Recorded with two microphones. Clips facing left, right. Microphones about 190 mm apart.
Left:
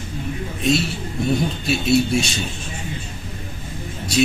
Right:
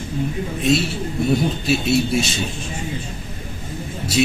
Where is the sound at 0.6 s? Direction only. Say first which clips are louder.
Right 1 dB; centre (ahead or behind).